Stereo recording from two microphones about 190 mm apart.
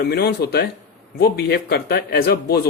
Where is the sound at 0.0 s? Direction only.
55° left (ahead or behind).